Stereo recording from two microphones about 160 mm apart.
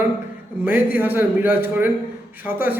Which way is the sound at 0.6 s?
10° right (ahead or behind).